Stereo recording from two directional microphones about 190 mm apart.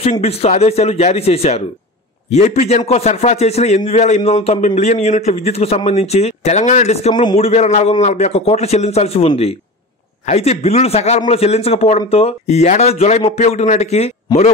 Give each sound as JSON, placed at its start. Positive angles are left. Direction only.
{"t": 0.0, "sound": "a man's voice", "side_deg": 35}